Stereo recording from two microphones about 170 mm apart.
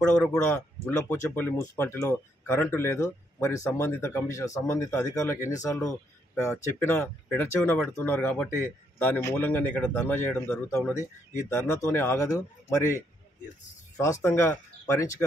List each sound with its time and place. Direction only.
0.0 s speech: 5° left (ahead or behind)